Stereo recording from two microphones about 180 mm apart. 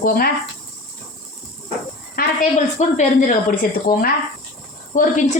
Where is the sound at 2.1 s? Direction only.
55° left (ahead or behind).